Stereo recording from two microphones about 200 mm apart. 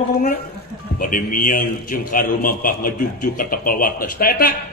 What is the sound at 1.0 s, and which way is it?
A man's voice, 45° left (ahead or behind).